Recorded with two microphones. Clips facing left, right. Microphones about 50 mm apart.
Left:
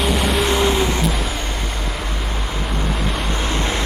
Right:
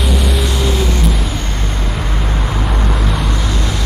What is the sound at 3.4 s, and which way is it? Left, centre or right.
Vehicle, left.